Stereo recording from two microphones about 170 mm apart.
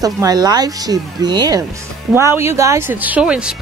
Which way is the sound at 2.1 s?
15° right (ahead or behind).